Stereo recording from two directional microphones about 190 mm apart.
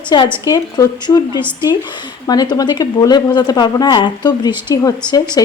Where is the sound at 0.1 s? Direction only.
20° left (ahead or behind).